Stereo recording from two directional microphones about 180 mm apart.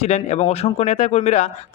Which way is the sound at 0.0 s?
35° left (ahead or behind).